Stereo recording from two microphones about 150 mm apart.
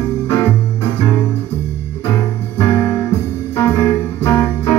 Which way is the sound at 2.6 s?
15° left (ahead or behind).